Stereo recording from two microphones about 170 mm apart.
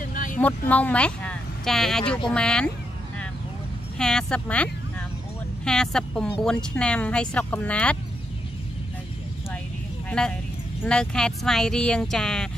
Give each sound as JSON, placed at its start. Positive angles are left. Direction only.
{"t": 0.1, "sound": "a sound", "side_deg": 50}
{"t": 0.4, "sound": "speech", "side_deg": 10}
{"t": 4.0, "sound": "speech", "side_deg": 5}
{"t": 5.7, "sound": "speech", "side_deg": 5}
{"t": 10.0, "sound": "speech", "side_deg": 5}